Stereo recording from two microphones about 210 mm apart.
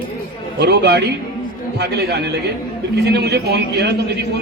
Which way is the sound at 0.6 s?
50° right (ahead or behind).